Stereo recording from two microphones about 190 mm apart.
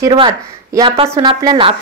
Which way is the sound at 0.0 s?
20° right (ahead or behind).